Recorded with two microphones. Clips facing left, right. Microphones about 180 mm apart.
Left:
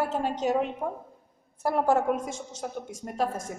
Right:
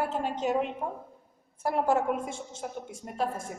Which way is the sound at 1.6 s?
40° left (ahead or behind).